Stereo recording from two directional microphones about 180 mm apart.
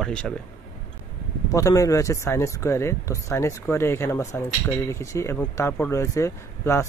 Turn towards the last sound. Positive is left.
turn(degrees=15)  # may be behind; listen again after turning